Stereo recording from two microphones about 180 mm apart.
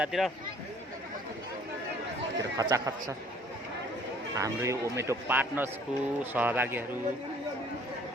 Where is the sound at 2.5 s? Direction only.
20° right (ahead or behind).